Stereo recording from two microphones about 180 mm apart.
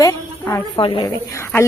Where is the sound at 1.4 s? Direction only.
15° left (ahead or behind).